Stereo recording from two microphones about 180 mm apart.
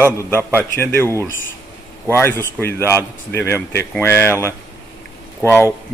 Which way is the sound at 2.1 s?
15° left (ahead or behind).